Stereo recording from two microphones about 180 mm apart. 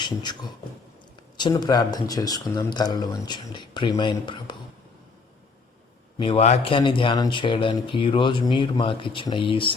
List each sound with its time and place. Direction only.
0.0 s speech: 25° left (ahead or behind)
6.1 s speech: 30° left (ahead or behind)